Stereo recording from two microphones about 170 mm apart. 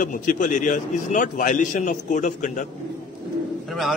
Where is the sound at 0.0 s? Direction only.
50° left (ahead or behind).